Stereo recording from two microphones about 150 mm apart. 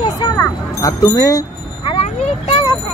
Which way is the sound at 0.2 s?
20° left (ahead or behind).